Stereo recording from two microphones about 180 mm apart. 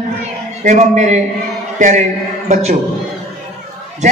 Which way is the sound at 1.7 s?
45° right (ahead or behind).